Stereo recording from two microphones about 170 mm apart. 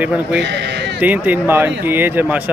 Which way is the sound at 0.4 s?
90° right.